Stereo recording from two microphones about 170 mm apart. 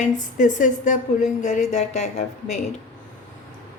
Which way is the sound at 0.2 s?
50° left (ahead or behind).